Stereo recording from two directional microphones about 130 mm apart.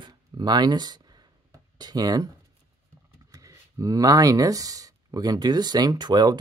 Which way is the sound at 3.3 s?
25° right (ahead or behind).